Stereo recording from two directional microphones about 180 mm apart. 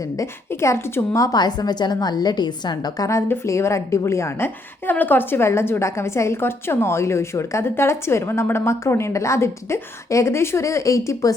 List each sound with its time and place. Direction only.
0.2 s a woman's voice: 15° left (ahead or behind)